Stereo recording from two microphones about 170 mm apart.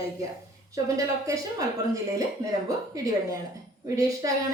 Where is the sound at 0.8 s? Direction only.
20° right (ahead or behind).